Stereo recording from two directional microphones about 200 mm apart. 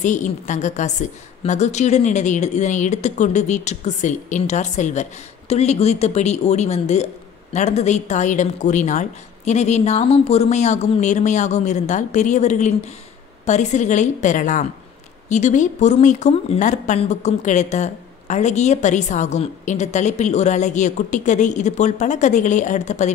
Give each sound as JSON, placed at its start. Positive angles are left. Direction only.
{"t": 0.0, "sound": "speech", "side_deg": 40}